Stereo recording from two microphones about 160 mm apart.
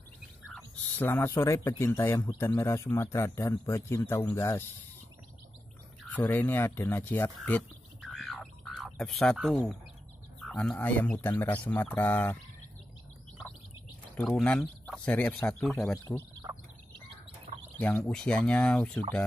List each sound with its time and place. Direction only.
0.9 s speech: 15° left (ahead or behind)
6.0 s speech: 10° left (ahead or behind)
8.0 s a sound: centre (ahead or behind)
10.4 s speech: 5° left (ahead or behind)
14.3 s speech: 10° left (ahead or behind)
16.2 s fowl: 20° right (ahead or behind)
17.7 s speech: 5° left (ahead or behind)